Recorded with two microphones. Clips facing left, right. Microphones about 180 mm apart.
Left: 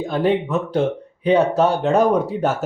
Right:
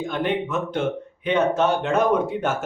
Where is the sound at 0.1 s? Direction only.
35° left (ahead or behind).